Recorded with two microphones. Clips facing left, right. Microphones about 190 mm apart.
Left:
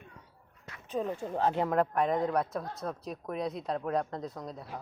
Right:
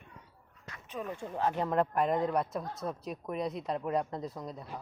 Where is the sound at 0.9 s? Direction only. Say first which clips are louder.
Left 6 dB; 30° left (ahead or behind).